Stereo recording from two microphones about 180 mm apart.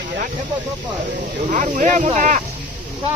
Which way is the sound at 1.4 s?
45° right (ahead or behind).